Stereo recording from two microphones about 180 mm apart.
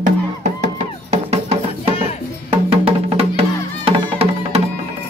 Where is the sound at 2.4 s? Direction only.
30° right (ahead or behind).